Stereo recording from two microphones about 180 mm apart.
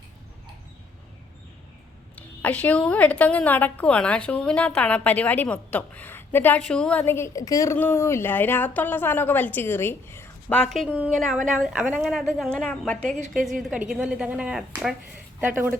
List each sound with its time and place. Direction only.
2.1 s a woman's voice: 10° left (ahead or behind)
13.1 s a woman's voice: 45° right (ahead or behind)
13.4 s a woman's voice: centre (ahead or behind)